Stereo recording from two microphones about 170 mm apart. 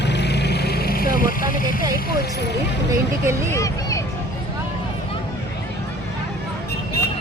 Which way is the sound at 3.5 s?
20° left (ahead or behind).